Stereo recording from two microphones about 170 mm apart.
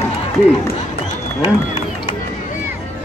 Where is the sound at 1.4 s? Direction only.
35° left (ahead or behind).